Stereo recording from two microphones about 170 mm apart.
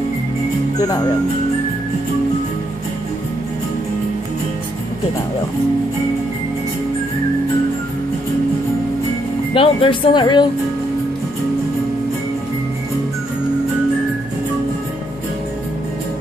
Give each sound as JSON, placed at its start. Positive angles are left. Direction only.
{"t": 0.7, "sound": "speech", "side_deg": 20}
{"t": 9.5, "sound": "speech", "side_deg": 30}